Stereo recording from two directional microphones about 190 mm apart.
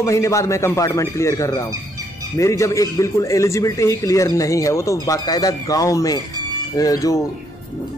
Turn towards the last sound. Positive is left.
turn(degrees=20)  # may be behind; listen again after turning